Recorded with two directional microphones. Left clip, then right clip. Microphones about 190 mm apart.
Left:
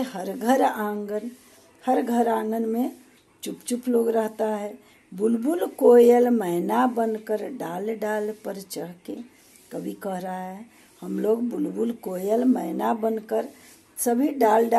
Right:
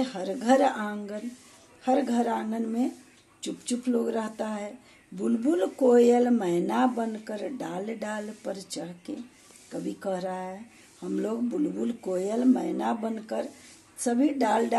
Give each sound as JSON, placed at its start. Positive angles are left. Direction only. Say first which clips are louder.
{"t": 0.0, "sound": "speech", "louder": "left 2 dB", "side_deg": 20}